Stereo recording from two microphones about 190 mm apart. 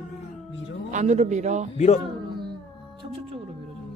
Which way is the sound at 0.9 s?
40° right (ahead or behind).